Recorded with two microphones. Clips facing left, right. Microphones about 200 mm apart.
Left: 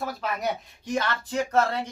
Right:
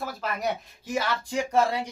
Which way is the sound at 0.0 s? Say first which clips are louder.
Left 1 dB; centre (ahead or behind).